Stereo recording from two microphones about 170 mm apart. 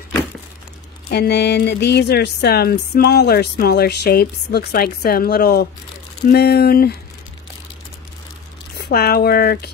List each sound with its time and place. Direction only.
1.0 s speech: 75° left (ahead or behind)
8.7 s speech: 70° left (ahead or behind)